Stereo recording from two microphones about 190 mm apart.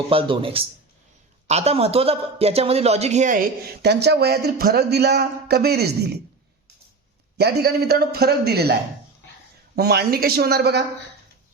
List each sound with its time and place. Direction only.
0.1 s a man's voice: 30° right (ahead or behind); by 6.1 s 60° right (ahead or behind)
7.3 s a man's voice: 55° right (ahead or behind)
9.7 s a man's voice: 55° right (ahead or behind)